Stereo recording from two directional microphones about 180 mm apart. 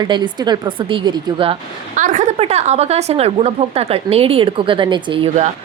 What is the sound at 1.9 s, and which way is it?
A woman's voice, 45° right (ahead or behind).